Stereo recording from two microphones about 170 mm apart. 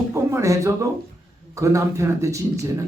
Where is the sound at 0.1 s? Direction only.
15° right (ahead or behind).